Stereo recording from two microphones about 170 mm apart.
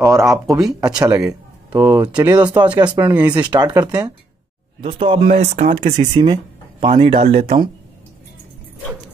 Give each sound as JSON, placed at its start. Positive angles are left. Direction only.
{"t": 0.0, "sound": "speech", "side_deg": -15}
{"t": 3.2, "sound": "speech", "side_deg": -10}
{"t": 3.5, "sound": "speech", "side_deg": -25}
{"t": 4.8, "sound": "speech", "side_deg": -30}
{"t": 5.4, "sound": "speech", "side_deg": -45}
{"t": 5.9, "sound": "speech", "side_deg": -30}